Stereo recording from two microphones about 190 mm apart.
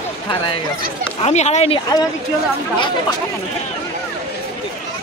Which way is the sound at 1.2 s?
35° left (ahead or behind).